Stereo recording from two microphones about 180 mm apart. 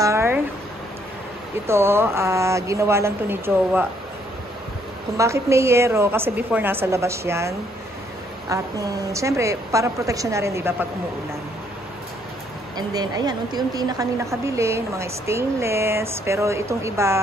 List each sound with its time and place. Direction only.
0.0 s a sound: 15° right (ahead or behind)
1.7 s a woman's voice: 15° right (ahead or behind)
5.1 s a woman's voice: 15° right (ahead or behind)
12.7 s a woman's voice: 20° right (ahead or behind)